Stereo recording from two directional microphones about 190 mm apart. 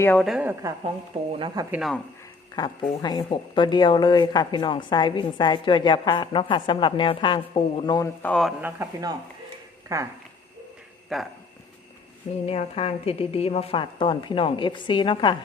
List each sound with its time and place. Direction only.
0.0 s a woman's voice: 10° left (ahead or behind)
0.3 s speech: 5° right (ahead or behind)
1.3 s speech: 25° right (ahead or behind)
1.7 s speech: centre (ahead or behind)
2.6 s a woman's voice: 20° left (ahead or behind)
8.2 s speech: 5° left (ahead or behind)
8.6 s speech: 15° right (ahead or behind)
11.1 s speech: centre (ahead or behind)
12.5 s a woman's voice: 30° left (ahead or behind)